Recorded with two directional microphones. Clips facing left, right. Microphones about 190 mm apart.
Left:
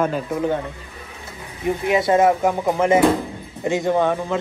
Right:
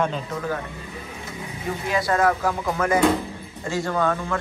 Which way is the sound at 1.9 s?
25° left (ahead or behind).